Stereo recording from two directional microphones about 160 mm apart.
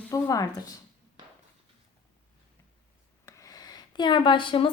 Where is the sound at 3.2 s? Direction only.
20° left (ahead or behind).